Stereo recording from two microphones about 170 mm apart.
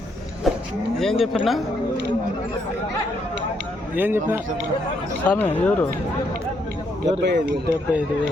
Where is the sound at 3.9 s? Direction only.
10° right (ahead or behind).